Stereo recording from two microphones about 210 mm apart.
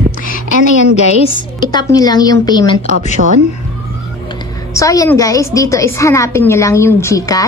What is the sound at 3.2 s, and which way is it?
Speech, 45° right (ahead or behind).